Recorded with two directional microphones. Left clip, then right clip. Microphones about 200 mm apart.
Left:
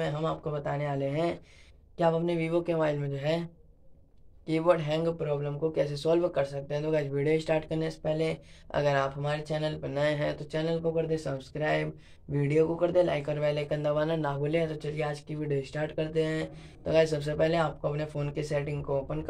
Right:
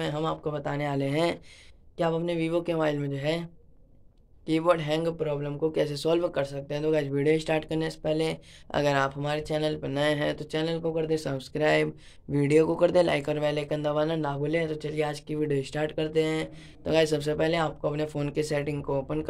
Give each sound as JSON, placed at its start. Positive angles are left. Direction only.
{"t": 0.0, "sound": "speech", "side_deg": -35}
{"t": 2.0, "sound": "speech", "side_deg": -30}
{"t": 4.5, "sound": "speech", "side_deg": -35}